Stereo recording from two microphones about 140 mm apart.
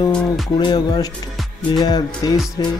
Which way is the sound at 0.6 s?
30° left (ahead or behind).